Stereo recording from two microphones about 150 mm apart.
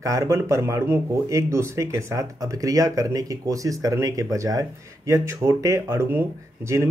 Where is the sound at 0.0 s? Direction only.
20° right (ahead or behind).